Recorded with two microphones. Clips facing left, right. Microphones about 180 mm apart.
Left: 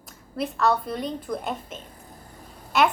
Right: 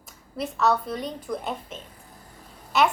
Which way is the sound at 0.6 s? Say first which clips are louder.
Even; 5° right (ahead or behind).